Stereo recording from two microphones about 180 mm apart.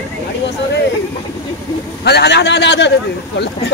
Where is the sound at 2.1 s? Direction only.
70° left (ahead or behind).